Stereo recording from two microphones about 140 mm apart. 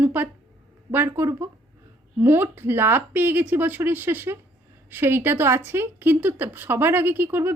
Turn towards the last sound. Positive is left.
turn(degrees=-15)  # may be behind; listen again after turning